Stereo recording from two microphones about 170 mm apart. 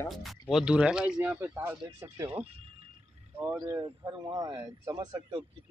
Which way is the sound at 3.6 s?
25° right (ahead or behind).